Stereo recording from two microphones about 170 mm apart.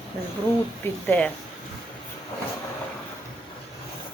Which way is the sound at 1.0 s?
10° left (ahead or behind).